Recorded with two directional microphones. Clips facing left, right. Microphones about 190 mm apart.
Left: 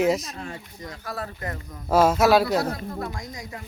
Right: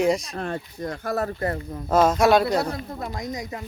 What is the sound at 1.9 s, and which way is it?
Speech, 10° left (ahead or behind).